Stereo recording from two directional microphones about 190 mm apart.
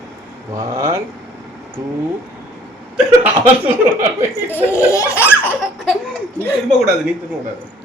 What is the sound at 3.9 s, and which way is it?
Speech, 10° right (ahead or behind).